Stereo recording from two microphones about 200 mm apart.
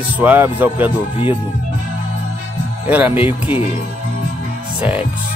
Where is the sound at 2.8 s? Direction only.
10° right (ahead or behind).